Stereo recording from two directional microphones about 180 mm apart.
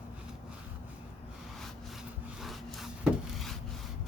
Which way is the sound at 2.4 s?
Centre (ahead or behind).